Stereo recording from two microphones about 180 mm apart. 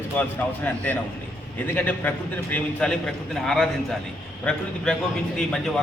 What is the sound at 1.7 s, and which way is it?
A man's voice, 10° left (ahead or behind).